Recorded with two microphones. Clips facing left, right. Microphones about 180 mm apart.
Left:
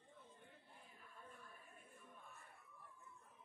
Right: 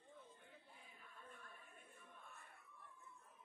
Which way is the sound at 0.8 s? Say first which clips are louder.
Left 1 dB; 5° left (ahead or behind).